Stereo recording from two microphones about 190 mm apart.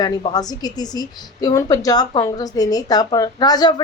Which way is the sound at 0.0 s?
25° left (ahead or behind).